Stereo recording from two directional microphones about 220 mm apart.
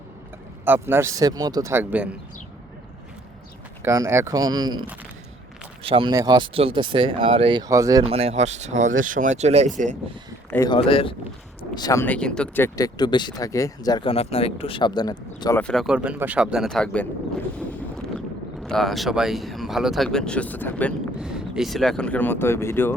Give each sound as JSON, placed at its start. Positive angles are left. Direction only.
{"t": 0.6, "sound": "speech", "side_deg": -10}
{"t": 3.8, "sound": "speech", "side_deg": -10}
{"t": 10.5, "sound": "speech", "side_deg": 15}
{"t": 10.8, "sound": "speech", "side_deg": 25}
{"t": 15.6, "sound": "speech", "side_deg": 0}
{"t": 18.6, "sound": "speech", "side_deg": 0}
{"t": 21.2, "sound": "speech", "side_deg": -5}